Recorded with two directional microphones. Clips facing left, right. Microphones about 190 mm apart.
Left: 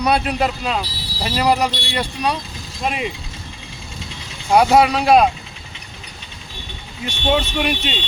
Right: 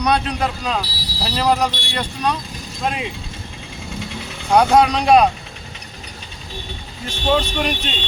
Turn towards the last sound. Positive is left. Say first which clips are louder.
# left 1 dB
turn(degrees=5)  # may be behind; listen again after turning